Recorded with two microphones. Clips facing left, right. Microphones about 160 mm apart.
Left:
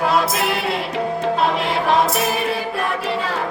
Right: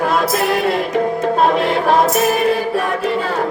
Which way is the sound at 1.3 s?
45° right (ahead or behind).